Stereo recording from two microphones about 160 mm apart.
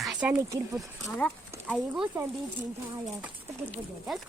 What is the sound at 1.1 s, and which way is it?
Horse, 10° left (ahead or behind).